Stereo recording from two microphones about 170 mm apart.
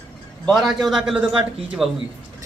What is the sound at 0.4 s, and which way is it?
A man's voice, centre (ahead or behind).